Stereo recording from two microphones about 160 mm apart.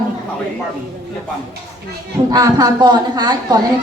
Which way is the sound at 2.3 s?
25° right (ahead or behind).